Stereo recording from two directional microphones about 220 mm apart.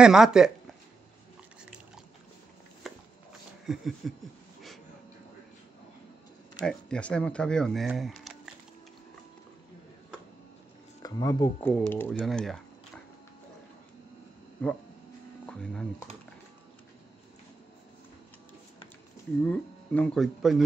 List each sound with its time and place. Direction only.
0.0 s speech: 5° right (ahead or behind)
2.8 s a sound: centre (ahead or behind)
3.6 s speech: centre (ahead or behind)
6.6 s speech: 5° left (ahead or behind)
11.0 s speech: 15° left (ahead or behind)
15.4 s speech: 5° left (ahead or behind)
19.4 s speech: 5° left (ahead or behind)